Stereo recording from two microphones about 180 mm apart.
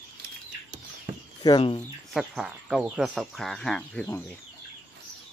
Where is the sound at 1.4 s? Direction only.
25° left (ahead or behind).